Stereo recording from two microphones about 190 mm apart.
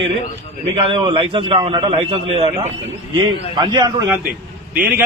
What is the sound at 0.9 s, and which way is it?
A man's voice, 25° right (ahead or behind).